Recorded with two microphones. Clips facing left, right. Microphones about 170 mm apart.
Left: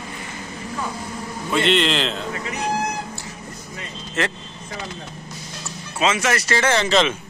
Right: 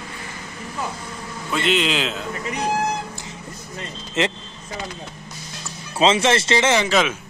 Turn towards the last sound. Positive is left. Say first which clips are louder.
# even
turn(degrees=-10)  # may be behind; listen again after turning